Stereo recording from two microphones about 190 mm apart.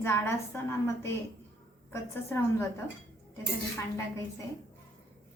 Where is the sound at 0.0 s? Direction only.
15° left (ahead or behind).